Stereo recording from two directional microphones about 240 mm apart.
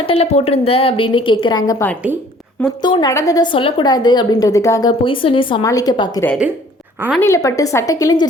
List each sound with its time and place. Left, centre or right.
0.0 s a woman's voice: left
6.2 s speech: centre
7.2 s a woman's voice: centre